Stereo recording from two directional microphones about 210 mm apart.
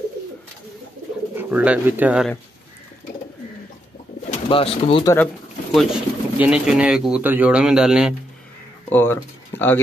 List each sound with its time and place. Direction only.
1.3 s speech: 10° right (ahead or behind)
4.5 s speech: 25° left (ahead or behind)
5.0 s speech: 10° left (ahead or behind)
8.9 s speech: 10° left (ahead or behind)